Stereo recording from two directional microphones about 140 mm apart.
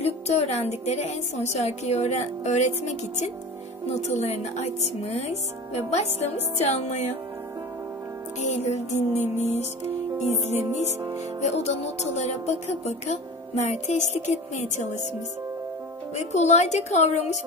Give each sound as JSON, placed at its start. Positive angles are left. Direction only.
{"t": 0.0, "sound": "speech", "side_deg": 50}
{"t": 8.4, "sound": "speech", "side_deg": 55}
{"t": 16.2, "sound": "speech", "side_deg": 55}